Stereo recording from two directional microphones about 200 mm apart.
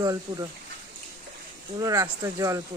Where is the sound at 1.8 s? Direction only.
15° right (ahead or behind).